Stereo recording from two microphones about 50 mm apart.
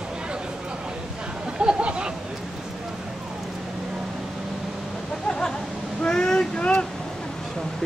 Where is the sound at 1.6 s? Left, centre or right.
Centre.